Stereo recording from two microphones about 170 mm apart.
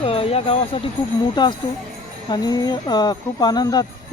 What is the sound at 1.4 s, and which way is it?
Speech, 25° left (ahead or behind).